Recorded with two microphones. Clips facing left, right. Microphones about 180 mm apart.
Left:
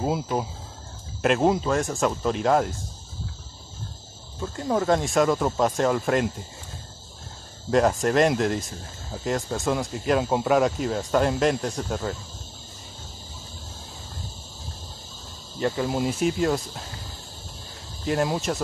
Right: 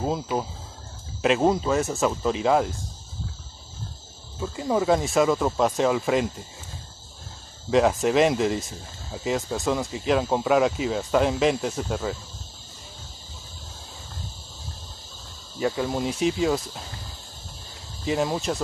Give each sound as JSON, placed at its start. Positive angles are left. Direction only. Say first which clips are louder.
{"t": 0.0, "sound": "speech", "louder": "left 1 dB", "side_deg": 5}
{"t": 4.4, "sound": "speech", "louder": "right 1 dB", "side_deg": -5}
{"t": 7.7, "sound": "speech", "louder": "right 1 dB", "side_deg": 0}
{"t": 15.6, "sound": "speech", "louder": "left 1 dB", "side_deg": 0}
{"t": 18.0, "sound": "speech", "louder": "even", "side_deg": 0}